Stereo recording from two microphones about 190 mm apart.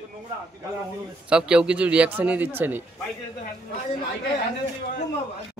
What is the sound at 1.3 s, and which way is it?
Speech, 5° right (ahead or behind).